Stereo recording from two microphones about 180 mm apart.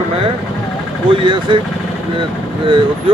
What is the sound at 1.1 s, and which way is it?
Speech, 25° right (ahead or behind).